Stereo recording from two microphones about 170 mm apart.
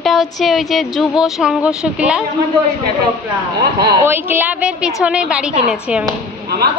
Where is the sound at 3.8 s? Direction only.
25° right (ahead or behind).